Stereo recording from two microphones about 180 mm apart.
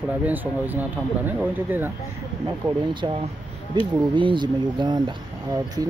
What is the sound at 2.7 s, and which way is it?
Speech, 25° right (ahead or behind).